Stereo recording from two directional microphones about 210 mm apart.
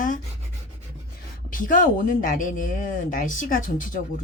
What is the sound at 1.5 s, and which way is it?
Speech, 40° left (ahead or behind).